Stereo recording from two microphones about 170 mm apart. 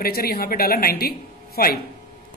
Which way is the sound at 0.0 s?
65° left (ahead or behind).